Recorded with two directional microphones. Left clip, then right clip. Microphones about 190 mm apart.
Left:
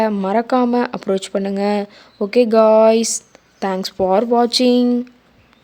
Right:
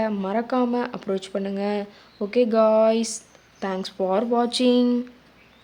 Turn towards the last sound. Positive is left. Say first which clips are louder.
# left 6 dB
turn(degrees=30)  # may be behind; listen again after turning